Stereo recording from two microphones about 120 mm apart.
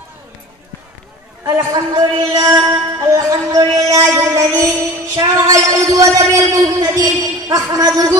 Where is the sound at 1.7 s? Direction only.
35° right (ahead or behind).